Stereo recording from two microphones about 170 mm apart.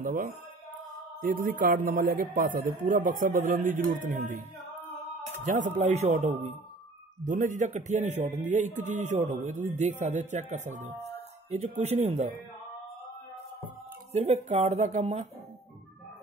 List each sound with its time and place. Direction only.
0.0 s speech: 55° right (ahead or behind)
5.4 s speech: 50° right (ahead or behind)
14.1 s speech: 40° right (ahead or behind)